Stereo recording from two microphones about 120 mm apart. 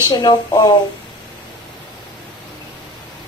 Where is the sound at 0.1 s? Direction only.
35° left (ahead or behind).